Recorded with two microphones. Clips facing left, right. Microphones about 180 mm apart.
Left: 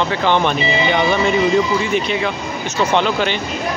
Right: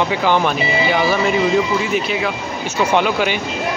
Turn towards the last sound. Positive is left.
turn(degrees=-10)  # may be behind; listen again after turning